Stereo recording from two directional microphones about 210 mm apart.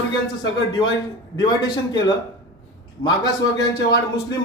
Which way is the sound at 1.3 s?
20° left (ahead or behind).